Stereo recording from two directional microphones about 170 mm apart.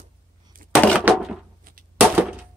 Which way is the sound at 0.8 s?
5° left (ahead or behind).